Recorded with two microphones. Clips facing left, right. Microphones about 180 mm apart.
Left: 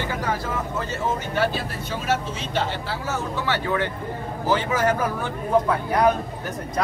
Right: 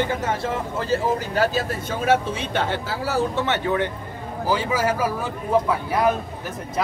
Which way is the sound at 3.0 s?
35° right (ahead or behind).